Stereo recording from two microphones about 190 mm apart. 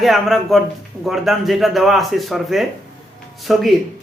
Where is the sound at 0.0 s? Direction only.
Centre (ahead or behind).